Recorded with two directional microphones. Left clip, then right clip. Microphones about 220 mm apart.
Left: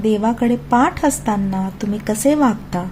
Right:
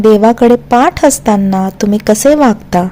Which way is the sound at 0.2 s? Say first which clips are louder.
Right 12 dB; 40° right (ahead or behind).